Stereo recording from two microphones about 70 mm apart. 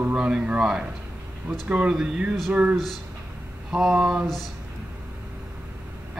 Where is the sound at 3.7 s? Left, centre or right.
Centre.